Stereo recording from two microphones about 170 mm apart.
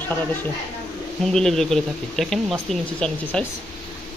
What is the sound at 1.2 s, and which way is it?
Speech, centre (ahead or behind).